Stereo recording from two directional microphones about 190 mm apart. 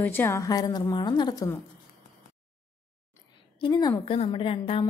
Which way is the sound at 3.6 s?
20° left (ahead or behind).